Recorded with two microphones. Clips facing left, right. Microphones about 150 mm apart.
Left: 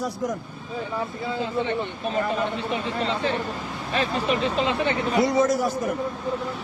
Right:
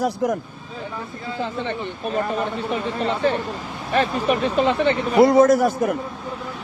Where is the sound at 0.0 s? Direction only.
65° right (ahead or behind).